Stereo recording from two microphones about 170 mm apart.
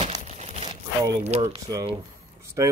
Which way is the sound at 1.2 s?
40° right (ahead or behind).